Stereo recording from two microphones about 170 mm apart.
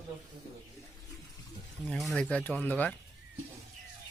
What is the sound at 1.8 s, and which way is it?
Speech, centre (ahead or behind).